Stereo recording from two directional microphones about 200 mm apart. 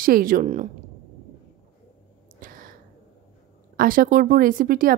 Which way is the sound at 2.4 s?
45° right (ahead or behind).